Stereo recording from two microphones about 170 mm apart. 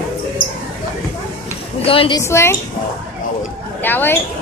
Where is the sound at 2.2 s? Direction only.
15° left (ahead or behind).